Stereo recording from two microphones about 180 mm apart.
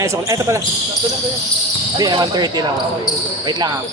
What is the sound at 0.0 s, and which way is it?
Speech, 15° right (ahead or behind).